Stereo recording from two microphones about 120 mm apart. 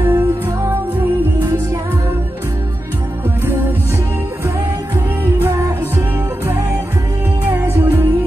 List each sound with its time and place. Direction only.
0.0 s music: 20° right (ahead or behind)
5.2 s music: 20° right (ahead or behind)